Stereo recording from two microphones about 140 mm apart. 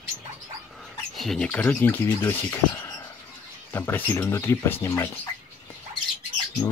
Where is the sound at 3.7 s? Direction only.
15° left (ahead or behind).